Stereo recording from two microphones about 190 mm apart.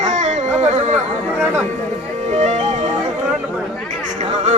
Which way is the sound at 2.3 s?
35° right (ahead or behind).